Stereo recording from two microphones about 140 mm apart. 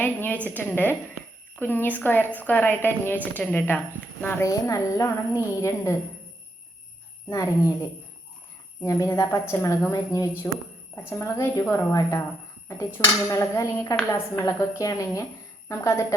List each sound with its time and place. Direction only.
0.0 s a woman's voice: 10° left (ahead or behind)
7.3 s speech: 25° left (ahead or behind)